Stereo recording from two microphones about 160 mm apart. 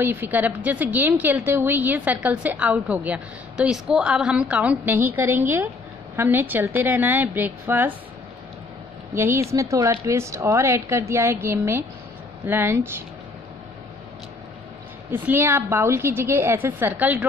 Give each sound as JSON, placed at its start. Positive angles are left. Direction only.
{"t": 0.0, "sound": "a woman's voice", "side_deg": -10}
{"t": 9.1, "sound": "a woman's voice", "side_deg": -15}
{"t": 15.0, "sound": "a woman's voice", "side_deg": -10}